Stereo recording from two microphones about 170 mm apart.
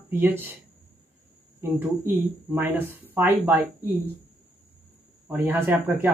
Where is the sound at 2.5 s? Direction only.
10° right (ahead or behind).